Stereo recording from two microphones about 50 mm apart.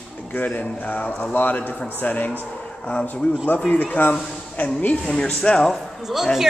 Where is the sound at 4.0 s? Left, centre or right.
Left.